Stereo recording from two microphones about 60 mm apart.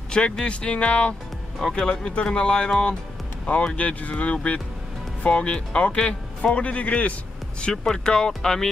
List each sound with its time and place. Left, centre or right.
0.1 s speech: centre
1.6 s speech: centre; by 7.2 s left
7.6 s speech: centre